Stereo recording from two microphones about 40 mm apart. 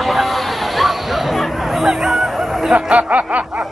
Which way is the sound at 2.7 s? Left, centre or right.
Right.